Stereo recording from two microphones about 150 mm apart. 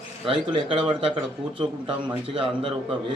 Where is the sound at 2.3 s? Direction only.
35° right (ahead or behind).